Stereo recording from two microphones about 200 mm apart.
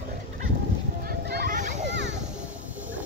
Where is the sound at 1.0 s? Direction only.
50° right (ahead or behind).